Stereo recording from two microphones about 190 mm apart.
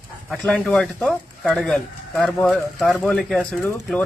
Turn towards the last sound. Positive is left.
turn(degrees=5)  # may be behind; listen again after turning